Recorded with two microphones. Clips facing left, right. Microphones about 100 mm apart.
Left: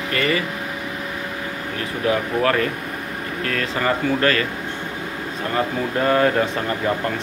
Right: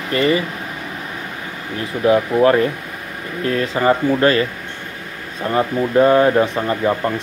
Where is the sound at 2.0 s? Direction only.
20° right (ahead or behind).